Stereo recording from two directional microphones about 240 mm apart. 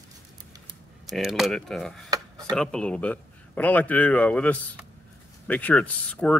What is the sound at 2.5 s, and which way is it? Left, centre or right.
Speech, centre.